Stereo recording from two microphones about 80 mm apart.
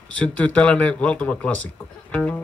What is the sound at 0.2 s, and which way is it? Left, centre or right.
Speech, centre.